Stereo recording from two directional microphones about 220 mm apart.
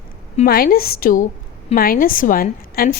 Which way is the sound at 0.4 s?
45° left (ahead or behind).